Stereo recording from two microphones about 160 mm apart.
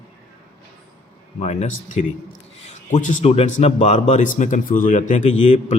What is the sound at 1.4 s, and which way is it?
A man's voice, 45° left (ahead or behind).